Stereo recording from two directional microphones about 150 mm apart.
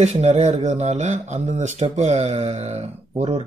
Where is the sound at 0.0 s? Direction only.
45° right (ahead or behind).